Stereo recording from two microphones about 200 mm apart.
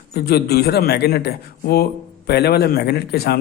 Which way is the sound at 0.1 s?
50° left (ahead or behind).